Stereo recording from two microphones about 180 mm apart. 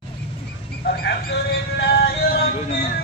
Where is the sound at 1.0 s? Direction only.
65° left (ahead or behind).